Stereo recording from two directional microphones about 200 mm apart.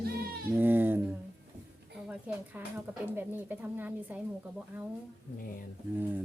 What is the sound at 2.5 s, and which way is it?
Speech, 10° right (ahead or behind).